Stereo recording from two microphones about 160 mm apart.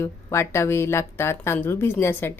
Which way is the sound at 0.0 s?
15° left (ahead or behind).